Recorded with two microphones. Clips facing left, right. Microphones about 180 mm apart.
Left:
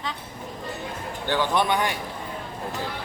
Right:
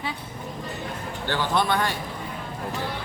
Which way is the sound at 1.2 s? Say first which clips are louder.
Left 1 dB; 15° left (ahead or behind).